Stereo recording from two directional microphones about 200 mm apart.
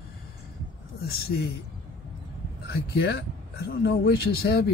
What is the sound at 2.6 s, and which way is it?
Speech, 55° left (ahead or behind).